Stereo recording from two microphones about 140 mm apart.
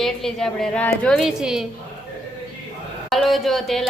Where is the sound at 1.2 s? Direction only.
5° right (ahead or behind).